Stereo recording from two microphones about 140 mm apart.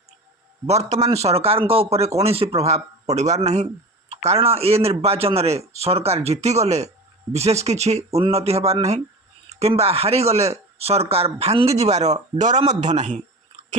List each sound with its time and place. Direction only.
0.7 s speech: 50° right (ahead or behind)